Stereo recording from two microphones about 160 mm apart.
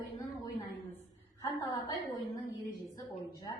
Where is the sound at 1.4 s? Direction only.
25° left (ahead or behind).